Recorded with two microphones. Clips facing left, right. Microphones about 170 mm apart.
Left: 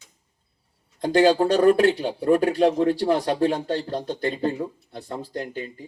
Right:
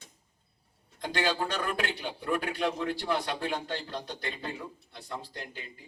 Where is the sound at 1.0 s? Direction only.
40° left (ahead or behind).